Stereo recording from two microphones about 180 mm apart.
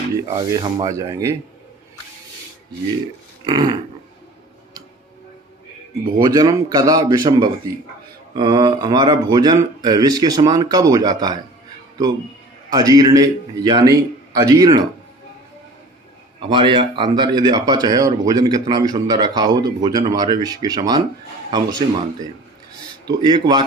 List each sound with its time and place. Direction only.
0.2 s a man's voice: 20° right (ahead or behind)
3.4 s a man's voice: 20° right (ahead or behind)
6.1 s a man's voice: 20° right (ahead or behind)
12.7 s a man's voice: 20° right (ahead or behind)
16.4 s a man's voice: 25° right (ahead or behind)
23.0 s a man's voice: 25° right (ahead or behind)